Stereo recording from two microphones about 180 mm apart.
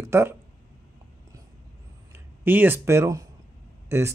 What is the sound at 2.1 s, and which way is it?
Speech, 10° right (ahead or behind).